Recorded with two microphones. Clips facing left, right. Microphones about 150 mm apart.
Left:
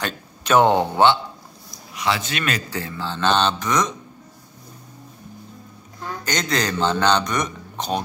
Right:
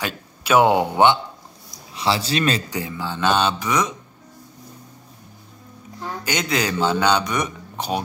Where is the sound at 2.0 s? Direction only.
30° right (ahead or behind).